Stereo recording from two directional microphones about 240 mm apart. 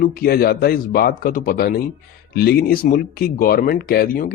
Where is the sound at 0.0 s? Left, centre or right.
Left.